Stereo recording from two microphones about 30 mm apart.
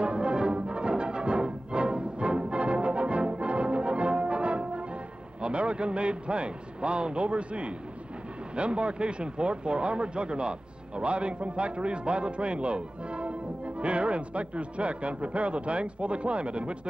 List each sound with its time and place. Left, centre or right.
0.0 s music: right
5.4 s a man's voice: right